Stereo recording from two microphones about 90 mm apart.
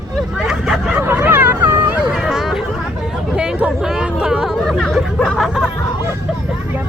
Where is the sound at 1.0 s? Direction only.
20° right (ahead or behind).